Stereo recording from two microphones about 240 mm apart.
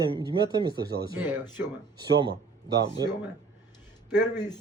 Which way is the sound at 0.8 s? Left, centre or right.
Right.